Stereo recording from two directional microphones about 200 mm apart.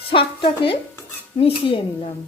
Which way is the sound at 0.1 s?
25° left (ahead or behind).